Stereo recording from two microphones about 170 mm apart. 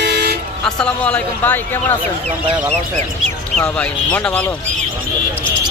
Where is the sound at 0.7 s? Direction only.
5° left (ahead or behind).